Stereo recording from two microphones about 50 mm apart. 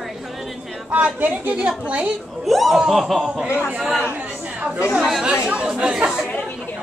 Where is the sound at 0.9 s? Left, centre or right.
Right.